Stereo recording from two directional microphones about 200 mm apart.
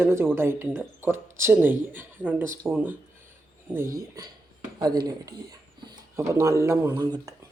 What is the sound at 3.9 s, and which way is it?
Speech, 20° right (ahead or behind).